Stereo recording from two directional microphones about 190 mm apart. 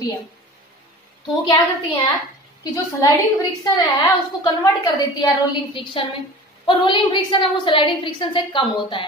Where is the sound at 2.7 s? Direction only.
20° left (ahead or behind).